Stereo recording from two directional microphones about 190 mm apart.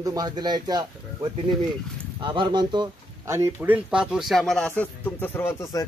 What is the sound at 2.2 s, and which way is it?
A man's voice, 25° right (ahead or behind).